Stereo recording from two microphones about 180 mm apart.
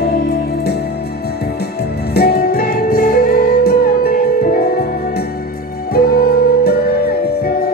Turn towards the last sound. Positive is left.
turn(degrees=55)  # may be behind; listen again after turning